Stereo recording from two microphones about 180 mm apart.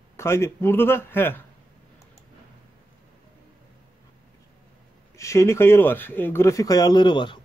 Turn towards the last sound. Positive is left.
turn(degrees=25)  # may be behind; listen again after turning